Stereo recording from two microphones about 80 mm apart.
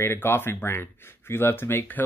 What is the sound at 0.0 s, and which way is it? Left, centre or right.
Speech, left.